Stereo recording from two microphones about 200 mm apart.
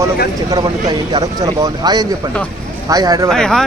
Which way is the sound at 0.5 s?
20° right (ahead or behind).